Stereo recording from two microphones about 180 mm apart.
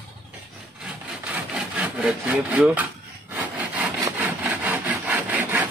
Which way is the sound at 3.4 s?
10° right (ahead or behind).